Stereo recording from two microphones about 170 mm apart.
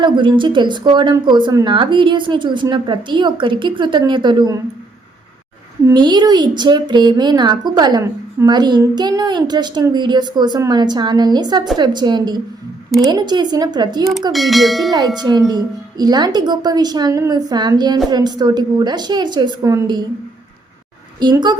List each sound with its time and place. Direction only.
0.0 s speech: 30° right (ahead or behind)
5.8 s speech: 25° right (ahead or behind)
14.3 s bell: centre (ahead or behind)
14.9 s speech: 25° right (ahead or behind)
21.2 s speech: 25° right (ahead or behind)